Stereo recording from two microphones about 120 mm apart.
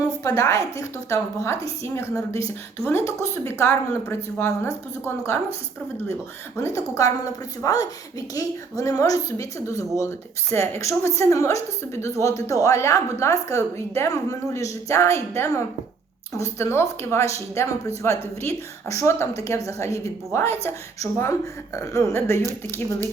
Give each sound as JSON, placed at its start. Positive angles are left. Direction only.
{"t": 0.0, "sound": "a sound", "side_deg": 30}
{"t": 0.8, "sound": "a woman's voice", "side_deg": 25}
{"t": 6.6, "sound": "a woman's voice", "side_deg": 25}